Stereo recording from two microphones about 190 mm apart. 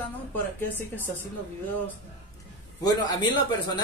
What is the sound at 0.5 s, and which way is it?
Speech, 10° left (ahead or behind).